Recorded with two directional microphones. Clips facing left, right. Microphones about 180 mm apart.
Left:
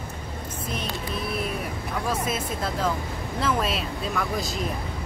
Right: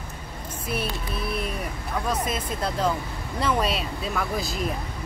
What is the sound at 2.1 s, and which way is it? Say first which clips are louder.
Speech: even; 5° left (ahead or behind).